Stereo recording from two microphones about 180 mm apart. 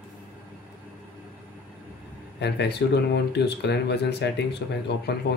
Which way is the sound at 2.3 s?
70° left (ahead or behind).